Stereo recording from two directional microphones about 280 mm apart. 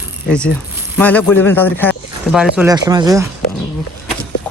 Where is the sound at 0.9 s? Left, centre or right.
Centre.